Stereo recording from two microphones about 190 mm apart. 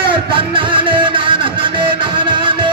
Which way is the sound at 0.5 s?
25° right (ahead or behind).